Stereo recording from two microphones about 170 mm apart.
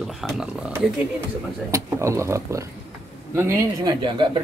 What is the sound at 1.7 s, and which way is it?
Speech, 15° right (ahead or behind).